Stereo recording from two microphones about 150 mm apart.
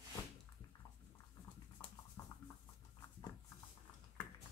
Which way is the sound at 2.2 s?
25° left (ahead or behind).